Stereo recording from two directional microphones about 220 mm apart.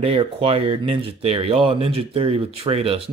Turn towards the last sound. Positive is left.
turn(degrees=-25)  # may be behind; listen again after turning